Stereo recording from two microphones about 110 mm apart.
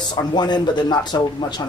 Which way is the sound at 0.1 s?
45° left (ahead or behind).